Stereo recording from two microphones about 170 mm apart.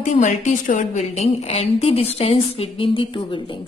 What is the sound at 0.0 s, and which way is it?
A woman's voice, 45° left (ahead or behind).